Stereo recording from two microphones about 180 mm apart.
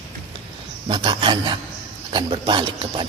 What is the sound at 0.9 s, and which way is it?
A man's voice, 25° right (ahead or behind).